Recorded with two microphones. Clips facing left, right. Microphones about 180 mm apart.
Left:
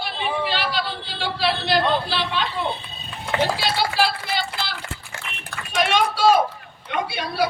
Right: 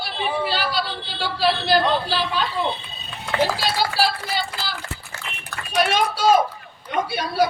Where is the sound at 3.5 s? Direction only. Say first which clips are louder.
Even; 40° right (ahead or behind).